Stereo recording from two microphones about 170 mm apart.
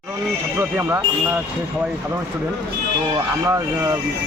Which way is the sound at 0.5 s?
15° right (ahead or behind).